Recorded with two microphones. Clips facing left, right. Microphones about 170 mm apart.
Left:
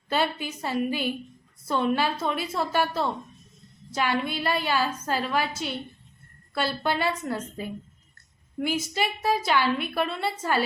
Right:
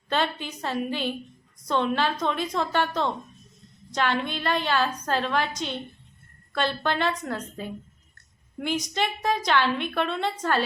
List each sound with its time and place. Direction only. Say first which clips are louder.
0.1 s a woman's voice: even; 10° left (ahead or behind)